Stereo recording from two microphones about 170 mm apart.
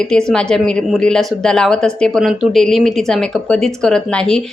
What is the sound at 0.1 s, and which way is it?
Speech, 5° left (ahead or behind).